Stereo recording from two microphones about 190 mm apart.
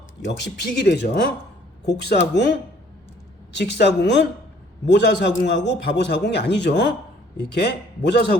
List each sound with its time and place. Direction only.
0.3 s a man's voice: 60° left (ahead or behind)
3.5 s a man's voice: 65° left (ahead or behind)